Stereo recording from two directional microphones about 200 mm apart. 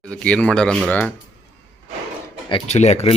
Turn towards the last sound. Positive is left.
turn(degrees=35)  # may be behind; listen again after turning